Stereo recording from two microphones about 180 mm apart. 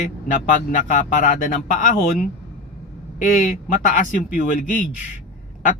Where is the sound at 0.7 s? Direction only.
45° left (ahead or behind).